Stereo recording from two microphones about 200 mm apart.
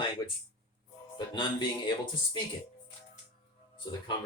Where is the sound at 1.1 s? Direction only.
25° left (ahead or behind).